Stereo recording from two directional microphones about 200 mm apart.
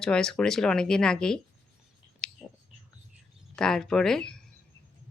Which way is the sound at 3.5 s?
5° left (ahead or behind).